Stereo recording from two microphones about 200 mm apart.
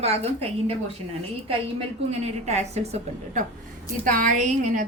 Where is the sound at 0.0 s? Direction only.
30° right (ahead or behind).